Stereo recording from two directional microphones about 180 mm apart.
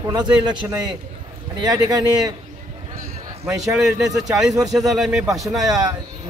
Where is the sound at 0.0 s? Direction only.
25° right (ahead or behind).